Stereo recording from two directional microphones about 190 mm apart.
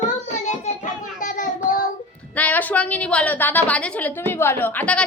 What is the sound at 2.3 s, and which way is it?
A woman's voice, 10° left (ahead or behind).